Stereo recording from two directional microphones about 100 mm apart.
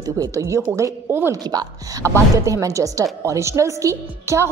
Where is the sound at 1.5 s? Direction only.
40° right (ahead or behind).